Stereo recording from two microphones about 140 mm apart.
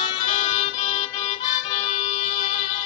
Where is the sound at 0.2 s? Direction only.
50° left (ahead or behind).